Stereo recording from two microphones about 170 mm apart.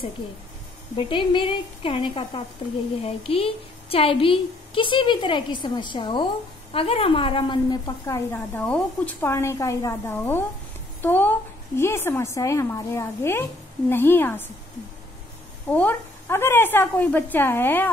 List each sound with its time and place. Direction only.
0.9 s a woman's voice: 30° left (ahead or behind)
8.3 s a woman's voice: 5° left (ahead or behind)
15.7 s a woman's voice: 10° left (ahead or behind)